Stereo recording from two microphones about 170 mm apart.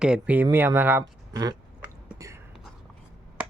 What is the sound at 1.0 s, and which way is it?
Speech, 20° right (ahead or behind).